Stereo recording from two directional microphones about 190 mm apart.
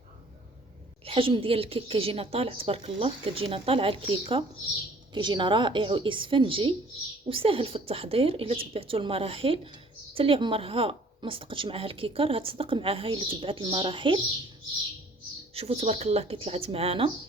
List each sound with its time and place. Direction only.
1.0 s a woman's voice: 30° right (ahead or behind)
15.5 s speech: 35° right (ahead or behind)